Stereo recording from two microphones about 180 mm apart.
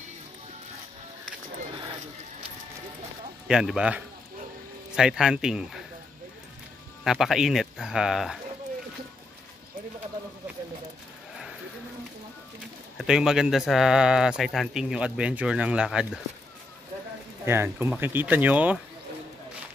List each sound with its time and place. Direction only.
3.4 s speech: 5° right (ahead or behind)
7.1 s speech: centre (ahead or behind)
12.9 s speech: 5° right (ahead or behind)
17.5 s speech: 15° right (ahead or behind)